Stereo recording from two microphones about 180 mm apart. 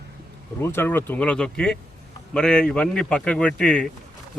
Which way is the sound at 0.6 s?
15° left (ahead or behind).